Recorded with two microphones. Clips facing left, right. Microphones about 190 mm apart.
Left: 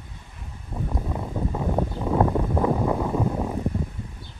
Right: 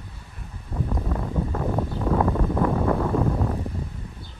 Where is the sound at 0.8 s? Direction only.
10° left (ahead or behind).